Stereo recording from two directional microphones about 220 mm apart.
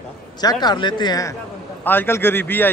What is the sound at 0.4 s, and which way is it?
A man's voice, 20° left (ahead or behind).